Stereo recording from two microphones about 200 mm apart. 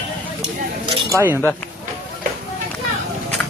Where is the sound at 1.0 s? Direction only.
15° right (ahead or behind).